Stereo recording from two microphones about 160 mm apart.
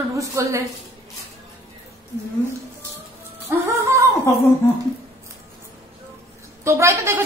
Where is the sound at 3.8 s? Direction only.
15° right (ahead or behind).